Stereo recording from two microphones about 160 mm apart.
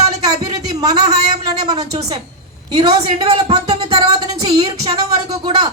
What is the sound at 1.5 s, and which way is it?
A woman's voice, 25° right (ahead or behind).